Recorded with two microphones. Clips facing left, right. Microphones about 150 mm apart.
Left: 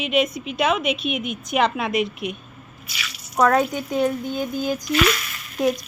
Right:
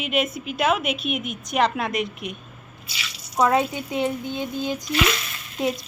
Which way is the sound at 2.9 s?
25° right (ahead or behind).